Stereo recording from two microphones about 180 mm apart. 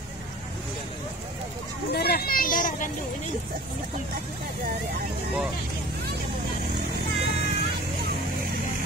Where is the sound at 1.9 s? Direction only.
60° left (ahead or behind).